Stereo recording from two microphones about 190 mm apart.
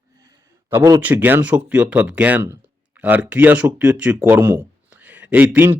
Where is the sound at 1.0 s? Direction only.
10° right (ahead or behind).